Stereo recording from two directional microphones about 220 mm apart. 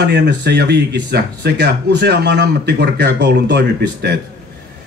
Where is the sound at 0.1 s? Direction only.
50° right (ahead or behind).